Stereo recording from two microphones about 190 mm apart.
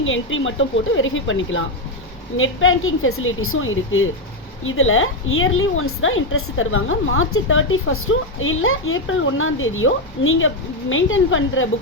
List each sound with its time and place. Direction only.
0.0 s a woman's voice: 90° left